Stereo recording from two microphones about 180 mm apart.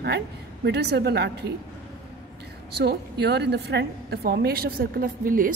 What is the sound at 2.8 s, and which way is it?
A woman's voice, 65° right (ahead or behind).